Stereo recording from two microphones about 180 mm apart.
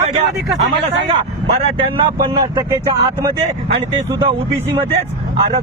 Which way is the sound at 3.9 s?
25° right (ahead or behind).